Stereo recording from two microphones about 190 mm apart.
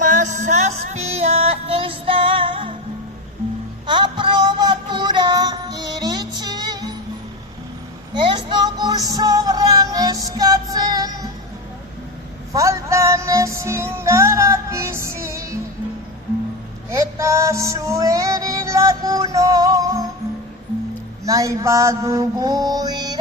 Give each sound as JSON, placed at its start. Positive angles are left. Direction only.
{"t": 0.0, "sound": "music", "side_deg": -40}
{"t": 3.8, "sound": "music", "side_deg": -25}
{"t": 8.1, "sound": "music", "side_deg": -25}
{"t": 12.5, "sound": "music", "side_deg": -15}
{"t": 16.9, "sound": "music", "side_deg": -15}
{"t": 21.2, "sound": "mantra", "side_deg": -15}